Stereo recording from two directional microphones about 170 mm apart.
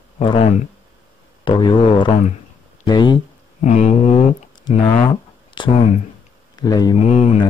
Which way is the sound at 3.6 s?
45° left (ahead or behind).